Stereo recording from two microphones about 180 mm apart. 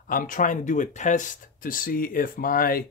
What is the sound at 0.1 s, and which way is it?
Speech, 45° left (ahead or behind).